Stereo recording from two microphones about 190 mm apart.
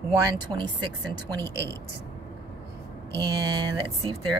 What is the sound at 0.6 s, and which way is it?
Speech, 25° right (ahead or behind).